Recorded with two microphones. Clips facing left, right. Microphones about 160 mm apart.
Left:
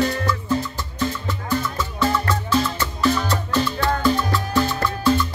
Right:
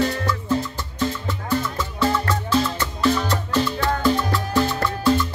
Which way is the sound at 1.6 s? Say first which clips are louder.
Even; 25° right (ahead or behind).